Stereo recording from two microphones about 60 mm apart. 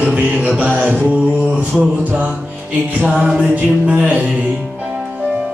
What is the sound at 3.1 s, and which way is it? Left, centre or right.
Music, centre.